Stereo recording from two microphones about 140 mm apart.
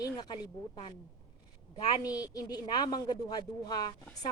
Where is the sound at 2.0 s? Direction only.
25° left (ahead or behind).